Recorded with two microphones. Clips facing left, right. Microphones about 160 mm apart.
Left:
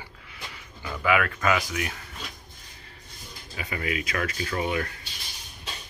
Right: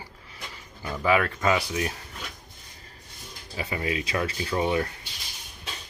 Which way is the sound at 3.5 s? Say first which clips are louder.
Right 2 dB; 30° right (ahead or behind).